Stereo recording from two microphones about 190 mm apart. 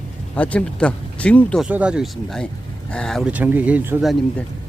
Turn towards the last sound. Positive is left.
turn(degrees=-10)  # may be behind; listen again after turning